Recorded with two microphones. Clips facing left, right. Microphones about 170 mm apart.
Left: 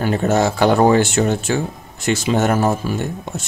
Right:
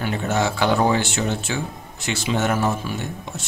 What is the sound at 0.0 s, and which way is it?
Speech, 40° left (ahead or behind).